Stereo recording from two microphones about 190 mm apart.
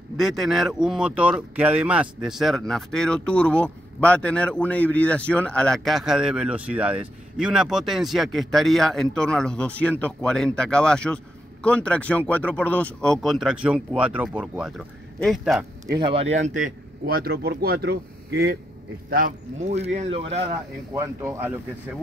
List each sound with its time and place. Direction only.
0.2 s speech: centre (ahead or behind)
15.9 s speech: 25° right (ahead or behind); by 18.6 s 60° right (ahead or behind)
19.0 s speech: 45° right (ahead or behind); by 20.4 s 30° right (ahead or behind)
20.9 s speech: 15° right (ahead or behind)